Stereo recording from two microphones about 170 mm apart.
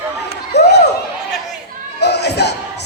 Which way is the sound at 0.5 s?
80° left.